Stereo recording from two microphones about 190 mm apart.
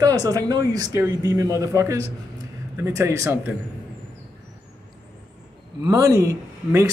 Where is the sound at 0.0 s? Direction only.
20° right (ahead or behind).